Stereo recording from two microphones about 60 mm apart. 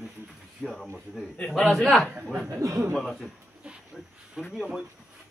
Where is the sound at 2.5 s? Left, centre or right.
Right.